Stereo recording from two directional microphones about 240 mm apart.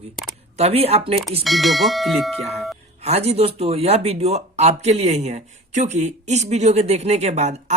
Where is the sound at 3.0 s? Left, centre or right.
Right.